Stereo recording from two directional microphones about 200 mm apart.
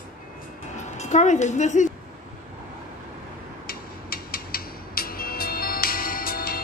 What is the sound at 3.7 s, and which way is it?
Music, 50° left (ahead or behind).